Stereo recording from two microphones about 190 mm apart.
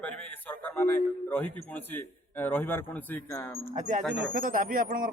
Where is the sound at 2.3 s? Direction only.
10° left (ahead or behind).